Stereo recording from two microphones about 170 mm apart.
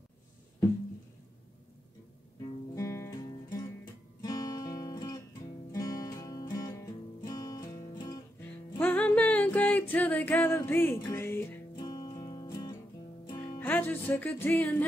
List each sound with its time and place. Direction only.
2.7 s music: 15° left (ahead or behind)
4.2 s music: 25° left (ahead or behind)
8.7 s music: 10° left (ahead or behind)
11.8 s music: 25° left (ahead or behind)
13.4 s music: 15° left (ahead or behind)